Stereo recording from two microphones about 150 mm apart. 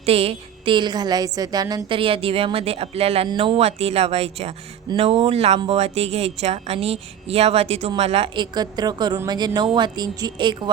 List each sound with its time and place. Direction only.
0.0 s a woman's voice: 40° right (ahead or behind); by 2.0 s 25° right (ahead or behind)
2.0 s a woman's voice: 35° right (ahead or behind)
8.5 s a woman's voice: 30° right (ahead or behind)